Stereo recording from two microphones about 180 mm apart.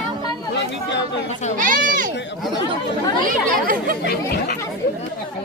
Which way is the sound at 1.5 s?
45° right (ahead or behind).